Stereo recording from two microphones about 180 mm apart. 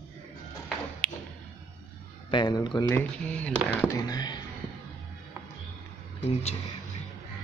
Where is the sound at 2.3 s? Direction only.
25° left (ahead or behind).